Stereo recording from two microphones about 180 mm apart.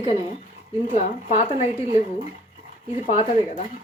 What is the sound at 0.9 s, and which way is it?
A woman's voice, 40° left (ahead or behind).